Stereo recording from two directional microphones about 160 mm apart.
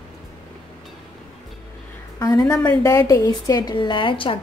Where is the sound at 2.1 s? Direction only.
20° left (ahead or behind).